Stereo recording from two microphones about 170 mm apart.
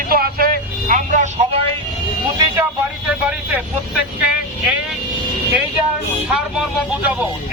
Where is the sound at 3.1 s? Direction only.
5° right (ahead or behind).